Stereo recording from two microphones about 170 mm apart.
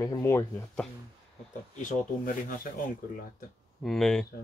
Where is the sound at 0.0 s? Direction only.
15° left (ahead or behind).